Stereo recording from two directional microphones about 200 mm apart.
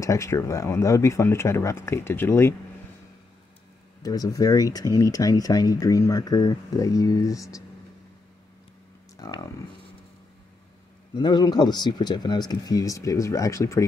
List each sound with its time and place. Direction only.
0.0 s speech: 15° left (ahead or behind)
4.0 s speech: 20° left (ahead or behind)
9.1 s speech: 15° left (ahead or behind)
11.1 s speech: 20° left (ahead or behind)